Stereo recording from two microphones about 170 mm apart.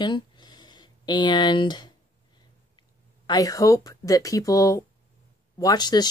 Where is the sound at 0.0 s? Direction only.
25° left (ahead or behind).